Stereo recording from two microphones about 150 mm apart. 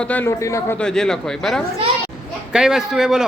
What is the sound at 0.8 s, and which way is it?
A man's voice, 5° left (ahead or behind).